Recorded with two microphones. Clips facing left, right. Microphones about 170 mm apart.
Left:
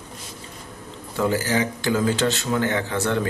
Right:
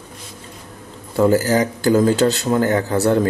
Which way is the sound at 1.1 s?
40° right (ahead or behind).